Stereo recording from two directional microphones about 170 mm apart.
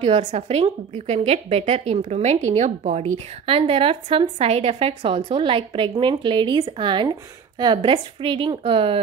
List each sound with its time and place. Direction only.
0.0 s a woman's voice: 45° right (ahead or behind)